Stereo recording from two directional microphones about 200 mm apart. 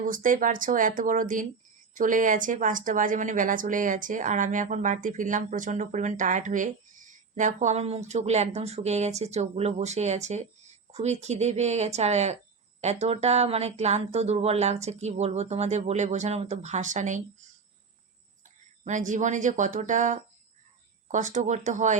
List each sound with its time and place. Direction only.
0.0 s a woman's voice: 40° right (ahead or behind)
18.9 s a woman's voice: 40° right (ahead or behind)